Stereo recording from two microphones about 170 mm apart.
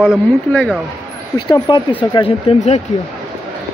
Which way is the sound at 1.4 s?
25° left (ahead or behind).